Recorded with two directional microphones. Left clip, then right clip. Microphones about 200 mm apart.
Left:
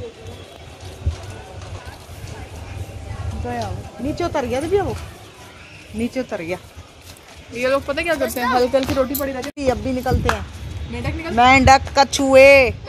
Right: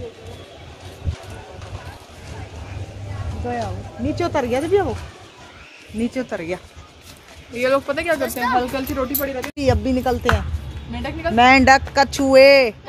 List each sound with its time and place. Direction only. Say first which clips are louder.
3.4 s speech: right 1 dB; 10° right (ahead or behind)
5.9 s speech: even; centre (ahead or behind)
7.5 s speech: right 1 dB; 35° right (ahead or behind)
7.8 s speech: left 1 dB; 10° right (ahead or behind)
8.5 s speech: left 4 dB; 55° left (ahead or behind)
9.6 s speech: right 2 dB; 15° right (ahead or behind)
11.0 s speech: right 1 dB; 10° right (ahead or behind)